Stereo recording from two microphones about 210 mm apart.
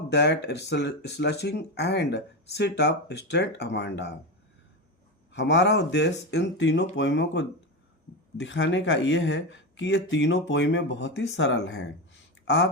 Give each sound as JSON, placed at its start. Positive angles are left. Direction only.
{"t": 0.1, "sound": "speech", "side_deg": 55}
{"t": 5.3, "sound": "speech", "side_deg": 55}